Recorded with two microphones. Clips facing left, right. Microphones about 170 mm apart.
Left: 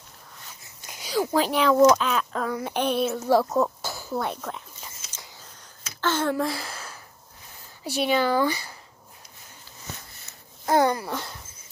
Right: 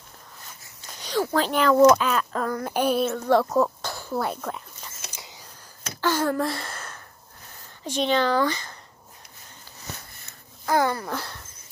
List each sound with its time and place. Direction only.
0.8 s a sound: 10° left (ahead or behind)
1.8 s speech: 5° right (ahead or behind)
3.1 s speech: 5° left (ahead or behind)
5.1 s a sound: 10° right (ahead or behind)
5.9 s speech: 10° right (ahead or behind)
6.3 s a sound: centre (ahead or behind)
7.8 s speech: 10° left (ahead or behind)
10.6 s speech: 20° left (ahead or behind)
11.1 s speech: centre (ahead or behind)